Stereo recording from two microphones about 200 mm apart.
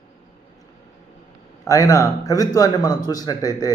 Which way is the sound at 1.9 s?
15° left (ahead or behind).